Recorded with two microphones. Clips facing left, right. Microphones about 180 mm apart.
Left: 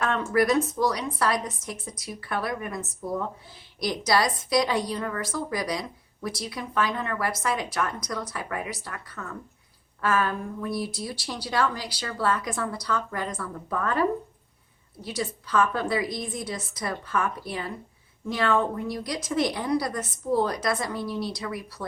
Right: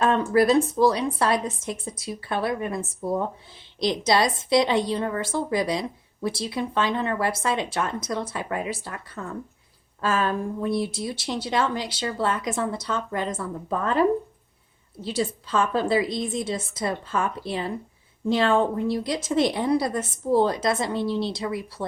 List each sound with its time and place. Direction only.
0.0 s speech: 30° right (ahead or behind)
15.0 s speech: 25° right (ahead or behind)